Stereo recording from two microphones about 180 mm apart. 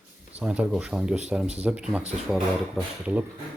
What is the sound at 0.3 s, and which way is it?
Speech, 5° right (ahead or behind).